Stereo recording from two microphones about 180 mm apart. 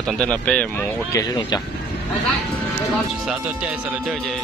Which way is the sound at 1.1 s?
15° left (ahead or behind).